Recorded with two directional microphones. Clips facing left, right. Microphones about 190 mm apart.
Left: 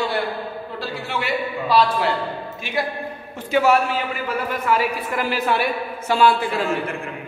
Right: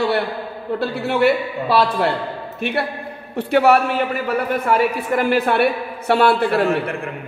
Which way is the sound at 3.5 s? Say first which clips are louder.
Right 3 dB; 60° right (ahead or behind).